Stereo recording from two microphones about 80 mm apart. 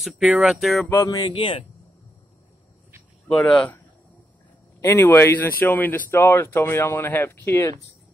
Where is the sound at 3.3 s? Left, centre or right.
Centre.